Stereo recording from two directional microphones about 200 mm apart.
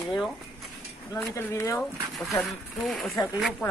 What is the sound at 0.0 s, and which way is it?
Speech, centre (ahead or behind).